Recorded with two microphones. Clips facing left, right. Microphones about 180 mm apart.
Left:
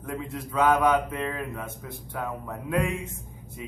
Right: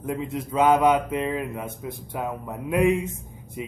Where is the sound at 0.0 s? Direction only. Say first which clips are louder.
Right 5 dB; 20° right (ahead or behind).